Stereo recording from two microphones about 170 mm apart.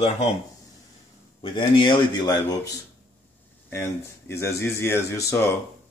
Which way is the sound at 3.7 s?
15° left (ahead or behind).